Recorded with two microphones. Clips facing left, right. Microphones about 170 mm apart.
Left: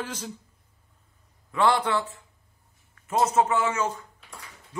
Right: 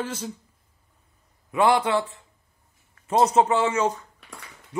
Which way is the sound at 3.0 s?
35° right (ahead or behind).